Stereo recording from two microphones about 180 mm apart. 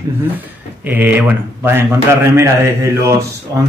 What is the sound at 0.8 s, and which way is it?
Speech, 10° right (ahead or behind).